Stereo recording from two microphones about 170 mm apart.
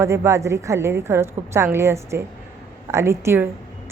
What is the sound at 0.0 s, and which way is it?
A woman's voice, 15° right (ahead or behind).